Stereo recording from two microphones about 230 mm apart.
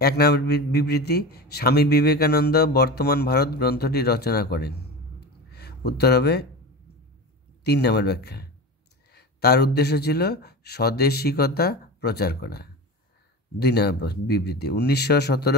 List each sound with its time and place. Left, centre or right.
0.0 s a man's voice: left
5.5 s a sound: left
7.6 s a man's voice: left